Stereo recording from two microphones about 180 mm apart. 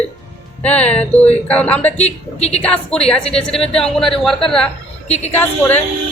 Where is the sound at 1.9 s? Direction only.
35° left (ahead or behind).